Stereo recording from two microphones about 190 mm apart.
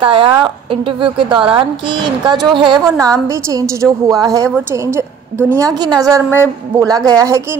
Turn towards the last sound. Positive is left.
turn(degrees=-15)  # may be behind; listen again after turning